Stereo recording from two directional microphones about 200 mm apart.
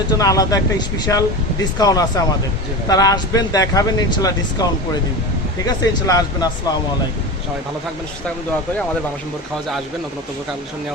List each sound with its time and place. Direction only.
0.2 s speech: 15° left (ahead or behind)
5.6 s speech: 20° left (ahead or behind)